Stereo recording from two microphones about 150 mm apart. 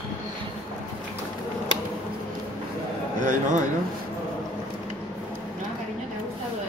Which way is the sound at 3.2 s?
60° right (ahead or behind).